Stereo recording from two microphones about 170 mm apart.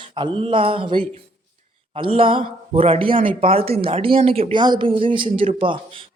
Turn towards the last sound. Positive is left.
turn(degrees=-30)  # may be behind; listen again after turning